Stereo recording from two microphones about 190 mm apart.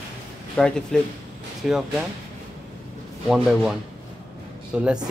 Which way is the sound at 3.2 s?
5° right (ahead or behind).